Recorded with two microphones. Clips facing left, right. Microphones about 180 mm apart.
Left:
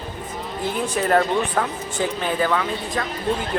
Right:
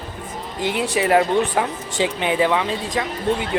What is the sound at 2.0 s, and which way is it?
Speech, 75° right (ahead or behind).